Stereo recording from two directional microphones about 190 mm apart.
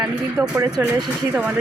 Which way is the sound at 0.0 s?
10° right (ahead or behind).